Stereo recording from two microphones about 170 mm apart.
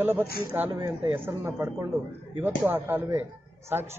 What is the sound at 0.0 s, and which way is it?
A man's voice, 10° right (ahead or behind).